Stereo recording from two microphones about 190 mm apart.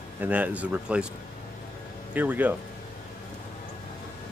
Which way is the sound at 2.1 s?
10° right (ahead or behind).